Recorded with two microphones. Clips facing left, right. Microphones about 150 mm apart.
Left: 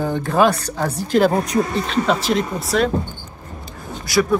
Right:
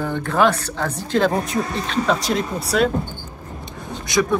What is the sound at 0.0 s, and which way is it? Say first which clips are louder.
Speech: left 2 dB; 15° left (ahead or behind).